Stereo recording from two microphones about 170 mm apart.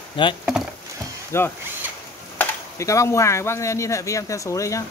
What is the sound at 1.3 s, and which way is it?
Speech, 15° left (ahead or behind).